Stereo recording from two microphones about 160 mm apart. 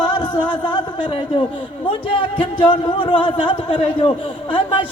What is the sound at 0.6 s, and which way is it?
Speech, 30° left (ahead or behind).